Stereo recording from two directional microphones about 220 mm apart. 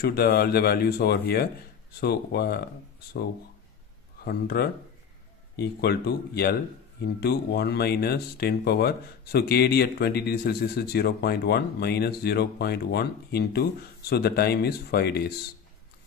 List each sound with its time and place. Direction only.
0.0 s speech: 45° left (ahead or behind)
4.2 s speech: 45° left (ahead or behind)